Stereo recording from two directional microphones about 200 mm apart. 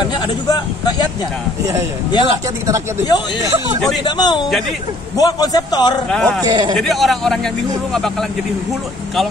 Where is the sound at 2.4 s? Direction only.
15° right (ahead or behind).